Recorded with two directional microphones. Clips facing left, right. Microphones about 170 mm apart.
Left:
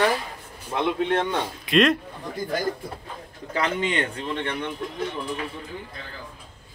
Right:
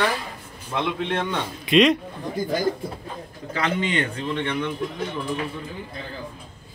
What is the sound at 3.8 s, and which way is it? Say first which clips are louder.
Speech: right 1 dB; 40° left (ahead or behind).